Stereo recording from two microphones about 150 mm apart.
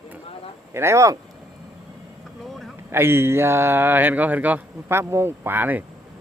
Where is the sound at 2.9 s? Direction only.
15° right (ahead or behind).